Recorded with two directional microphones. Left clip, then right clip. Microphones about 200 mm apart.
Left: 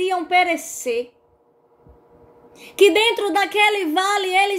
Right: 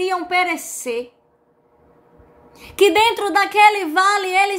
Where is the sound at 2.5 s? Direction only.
15° right (ahead or behind).